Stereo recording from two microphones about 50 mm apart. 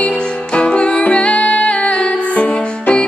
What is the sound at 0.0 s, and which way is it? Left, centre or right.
Music, centre.